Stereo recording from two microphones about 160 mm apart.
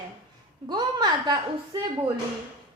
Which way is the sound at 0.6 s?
25° right (ahead or behind).